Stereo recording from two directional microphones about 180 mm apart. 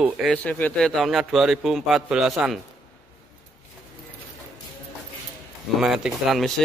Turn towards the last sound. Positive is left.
turn(degrees=0)  # may be behind; listen again after turning